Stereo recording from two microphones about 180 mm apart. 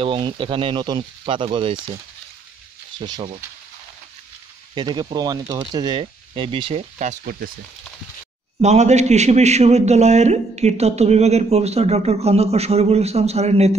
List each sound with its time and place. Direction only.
0.0 s speech: 30° right (ahead or behind)
3.0 s speech: 20° right (ahead or behind)
4.7 s speech: 20° right (ahead or behind)
7.0 s speech: 50° right (ahead or behind)
8.5 s a man's voice: 40° right (ahead or behind)